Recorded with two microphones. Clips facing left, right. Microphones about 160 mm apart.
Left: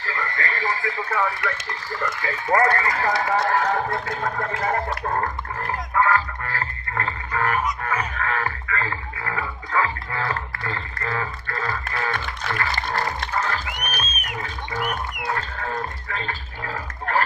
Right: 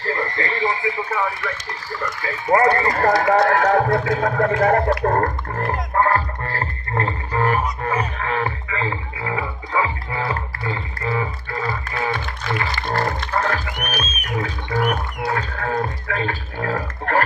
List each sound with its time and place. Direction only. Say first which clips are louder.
0.0 s radio: right 5 dB; 30° right (ahead or behind)
0.6 s radio: right 6 dB; 15° right (ahead or behind)
2.4 s speech: right 4 dB; 20° right (ahead or behind)
2.9 s speech: right 6 dB; 50° right (ahead or behind)
6.0 s music: right 2 dB; 35° right (ahead or behind); by 12.6 s 15° right (ahead or behind)
12.9 s music: right 7 dB; 50° right (ahead or behind)
15.3 s music: right 8 dB; 60° right (ahead or behind)